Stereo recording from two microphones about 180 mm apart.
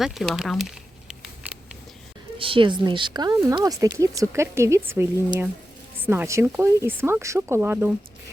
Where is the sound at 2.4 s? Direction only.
30° right (ahead or behind).